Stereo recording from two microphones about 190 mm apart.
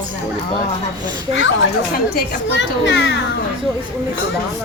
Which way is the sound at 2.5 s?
70° left (ahead or behind).